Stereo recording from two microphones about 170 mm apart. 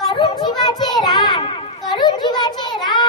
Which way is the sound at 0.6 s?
25° left (ahead or behind).